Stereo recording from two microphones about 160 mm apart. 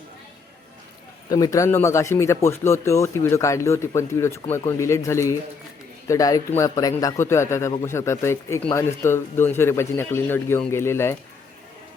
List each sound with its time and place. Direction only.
1.3 s speech: 20° left (ahead or behind)